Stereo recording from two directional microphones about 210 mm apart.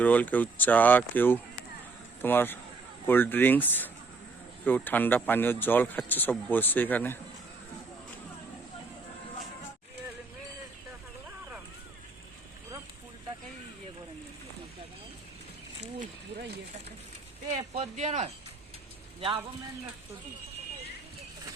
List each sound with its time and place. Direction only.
0.0 s speech: 5° left (ahead or behind)
17.7 s speech: 35° right (ahead or behind)